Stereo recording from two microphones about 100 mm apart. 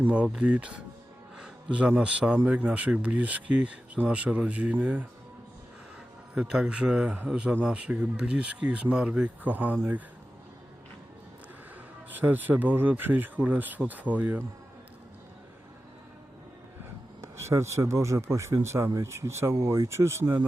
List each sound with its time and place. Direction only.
0.0 s a man's voice: 10° right (ahead or behind)
6.3 s a man's voice: 5° right (ahead or behind)
12.1 s a man's voice: 20° right (ahead or behind)
17.2 s speech: 30° right (ahead or behind)